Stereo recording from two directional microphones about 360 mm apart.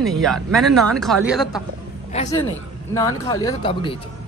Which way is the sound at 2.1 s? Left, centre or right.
Centre.